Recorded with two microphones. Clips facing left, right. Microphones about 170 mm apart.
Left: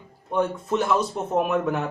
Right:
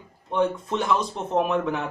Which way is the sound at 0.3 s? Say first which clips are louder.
Even; 5° left (ahead or behind).